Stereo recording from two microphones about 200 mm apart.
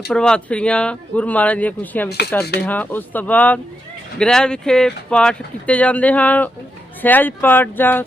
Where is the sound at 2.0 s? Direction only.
55° left (ahead or behind).